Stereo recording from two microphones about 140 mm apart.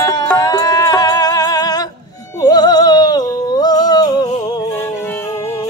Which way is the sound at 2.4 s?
30° left (ahead or behind).